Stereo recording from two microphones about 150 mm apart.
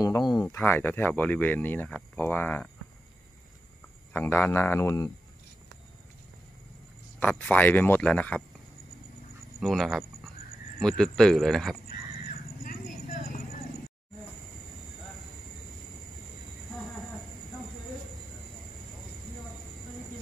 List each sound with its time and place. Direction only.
0.0 s a sound: 25° left (ahead or behind)
0.5 s speech: 15° left (ahead or behind)
4.1 s speech: 10° left (ahead or behind)
7.2 s speech: 10° left (ahead or behind)
9.6 s speech: centre (ahead or behind)
11.9 s vehicle: 65° left (ahead or behind)